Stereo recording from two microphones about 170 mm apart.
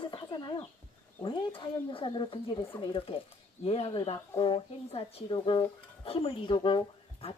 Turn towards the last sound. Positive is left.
turn(degrees=30)  # may be behind; listen again after turning